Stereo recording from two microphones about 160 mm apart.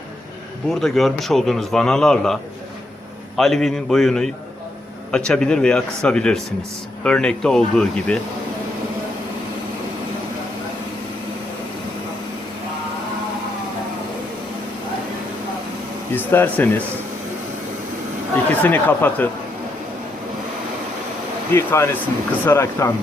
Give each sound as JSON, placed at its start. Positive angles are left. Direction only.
{"t": 0.7, "sound": "a man's voice", "side_deg": 0}
{"t": 16.1, "sound": "speech", "side_deg": 10}
{"t": 18.6, "sound": "speech", "side_deg": 10}
{"t": 21.5, "sound": "speech", "side_deg": 15}